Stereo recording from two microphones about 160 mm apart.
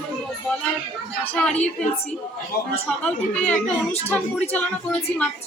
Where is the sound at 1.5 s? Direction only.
45° left (ahead or behind).